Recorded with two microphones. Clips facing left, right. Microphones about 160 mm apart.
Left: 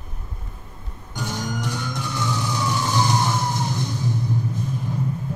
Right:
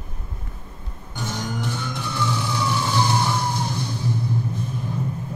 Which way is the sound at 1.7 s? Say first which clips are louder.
Even; 15° left (ahead or behind).